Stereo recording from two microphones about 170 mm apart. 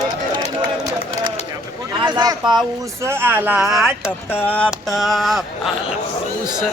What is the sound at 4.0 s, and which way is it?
Speech, 15° left (ahead or behind).